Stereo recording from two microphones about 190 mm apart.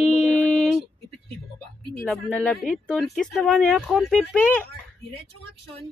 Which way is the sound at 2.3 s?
5° left (ahead or behind).